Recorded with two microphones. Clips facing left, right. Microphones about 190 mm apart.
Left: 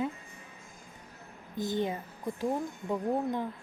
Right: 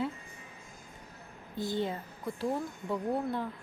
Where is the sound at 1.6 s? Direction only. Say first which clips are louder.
Left 2 dB; 15° left (ahead or behind).